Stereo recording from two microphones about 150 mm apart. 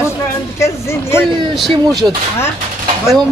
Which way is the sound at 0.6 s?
15° left (ahead or behind).